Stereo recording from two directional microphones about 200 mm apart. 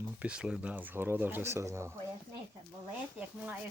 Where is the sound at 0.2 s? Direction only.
5° right (ahead or behind).